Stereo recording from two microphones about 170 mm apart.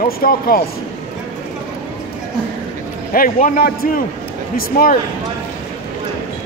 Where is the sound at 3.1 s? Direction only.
55° left (ahead or behind).